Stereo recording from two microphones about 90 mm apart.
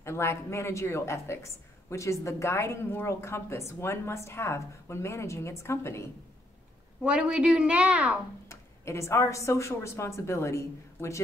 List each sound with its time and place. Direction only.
0.0 s a woman's voice: 30° left (ahead or behind)
7.0 s a woman's voice: 10° right (ahead or behind)
8.5 s speech: 30° left (ahead or behind)